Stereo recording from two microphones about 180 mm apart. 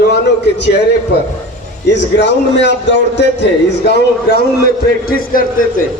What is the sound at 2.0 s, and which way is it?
A man's voice, 80° left.